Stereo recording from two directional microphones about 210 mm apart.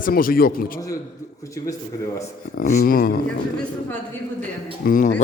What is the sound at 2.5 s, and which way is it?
Speech, 45° left (ahead or behind).